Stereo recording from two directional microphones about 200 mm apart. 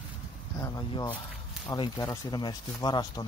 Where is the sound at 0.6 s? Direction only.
20° left (ahead or behind).